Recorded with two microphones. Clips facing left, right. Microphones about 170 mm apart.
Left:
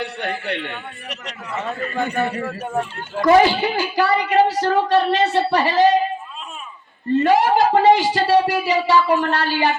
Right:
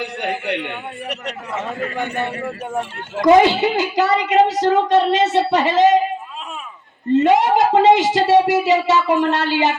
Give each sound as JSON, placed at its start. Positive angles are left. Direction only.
{"t": 0.0, "sound": "a man's voice", "side_deg": -15}
{"t": 2.4, "sound": "a woman's voice", "side_deg": -20}
{"t": 7.1, "sound": "a woman's voice", "side_deg": -20}